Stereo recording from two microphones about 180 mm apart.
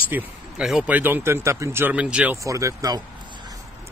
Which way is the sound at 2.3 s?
15° right (ahead or behind).